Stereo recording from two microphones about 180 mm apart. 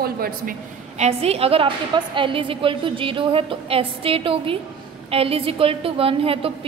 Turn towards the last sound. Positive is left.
turn(degrees=-30)  # may be behind; listen again after turning